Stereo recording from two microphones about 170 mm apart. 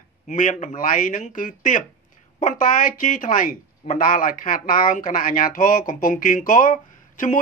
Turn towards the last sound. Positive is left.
turn(degrees=50)  # may be behind; listen again after turning